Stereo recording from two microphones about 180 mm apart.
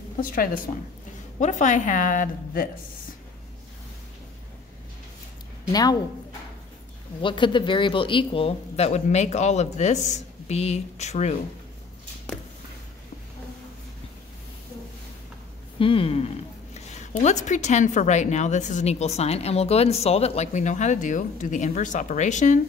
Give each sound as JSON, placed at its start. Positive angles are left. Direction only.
{"t": 0.2, "sound": "a woman's voice", "side_deg": 50}
{"t": 5.7, "sound": "a woman's voice", "side_deg": 20}
{"t": 7.2, "sound": "speech", "side_deg": 25}
{"t": 15.8, "sound": "speech", "side_deg": 30}